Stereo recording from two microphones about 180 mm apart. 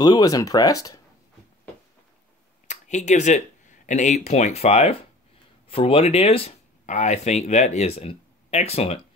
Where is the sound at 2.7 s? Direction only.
40° left (ahead or behind).